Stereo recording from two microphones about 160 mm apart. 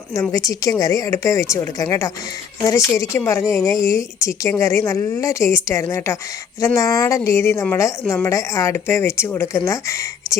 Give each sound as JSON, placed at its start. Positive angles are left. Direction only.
{"t": 0.1, "sound": "a woman's voice", "side_deg": 20}